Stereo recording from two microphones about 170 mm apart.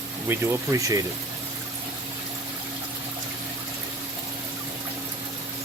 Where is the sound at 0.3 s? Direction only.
20° right (ahead or behind).